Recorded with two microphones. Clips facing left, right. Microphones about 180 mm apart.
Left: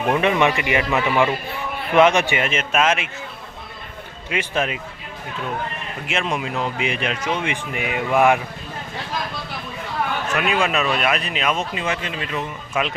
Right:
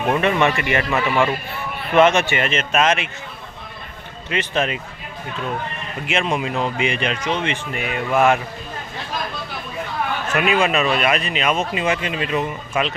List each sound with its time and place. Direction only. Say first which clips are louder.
0.2 s a man's voice: even; 15° left (ahead or behind)
4.3 s a man's voice: right 1 dB; 10° left (ahead or behind)
6.1 s speech: right 3 dB; centre (ahead or behind)
10.3 s speech: right 3 dB; centre (ahead or behind)